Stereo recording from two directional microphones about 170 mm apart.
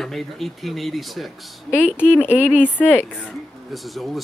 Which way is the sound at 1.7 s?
10° left (ahead or behind).